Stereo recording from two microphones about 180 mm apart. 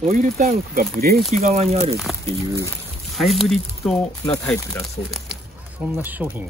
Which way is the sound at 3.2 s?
Centre (ahead or behind).